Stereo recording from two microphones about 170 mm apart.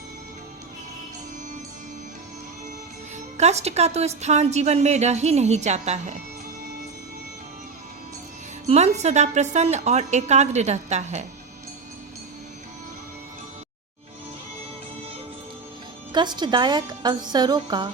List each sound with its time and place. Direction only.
3.3 s a woman's voice: 40° right (ahead or behind)
8.6 s a woman's voice: 40° right (ahead or behind)
16.1 s a woman's voice: 25° right (ahead or behind)